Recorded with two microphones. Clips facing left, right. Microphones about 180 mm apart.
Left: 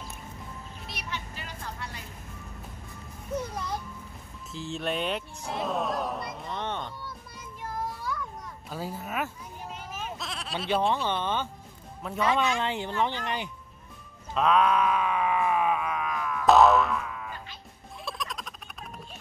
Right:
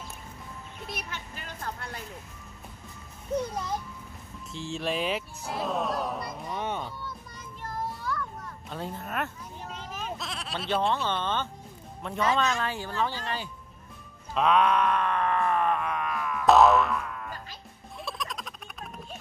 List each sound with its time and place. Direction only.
0.9 s music: 50° right (ahead or behind)
4.5 s speech: centre (ahead or behind)
7.6 s a sound: 10° left (ahead or behind)
10.1 s bleat: centre (ahead or behind)
10.9 s speech: 15° left (ahead or behind)
14.3 s a sound: centre (ahead or behind)